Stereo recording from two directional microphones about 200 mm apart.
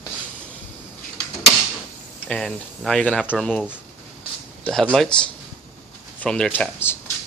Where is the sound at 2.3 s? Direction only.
5° left (ahead or behind).